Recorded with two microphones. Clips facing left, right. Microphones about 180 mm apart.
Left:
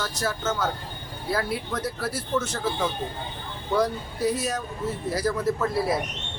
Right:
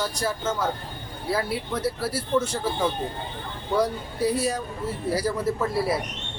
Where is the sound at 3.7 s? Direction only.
10° right (ahead or behind).